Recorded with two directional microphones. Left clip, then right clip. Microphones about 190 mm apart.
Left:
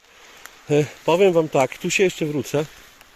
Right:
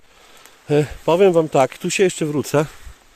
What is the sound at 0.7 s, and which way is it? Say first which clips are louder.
Speech: right 2 dB; 15° right (ahead or behind).